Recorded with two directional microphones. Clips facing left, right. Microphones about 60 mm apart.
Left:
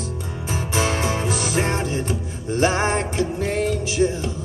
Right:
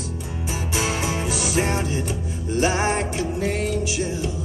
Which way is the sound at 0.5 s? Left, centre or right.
Left.